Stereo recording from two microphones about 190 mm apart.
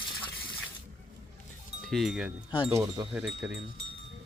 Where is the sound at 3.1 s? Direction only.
5° right (ahead or behind).